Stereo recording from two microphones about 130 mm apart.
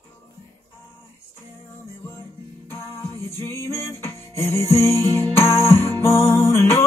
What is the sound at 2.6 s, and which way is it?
Music, 20° left (ahead or behind).